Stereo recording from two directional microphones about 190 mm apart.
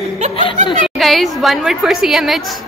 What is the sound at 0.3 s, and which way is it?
Snicker, 25° left (ahead or behind).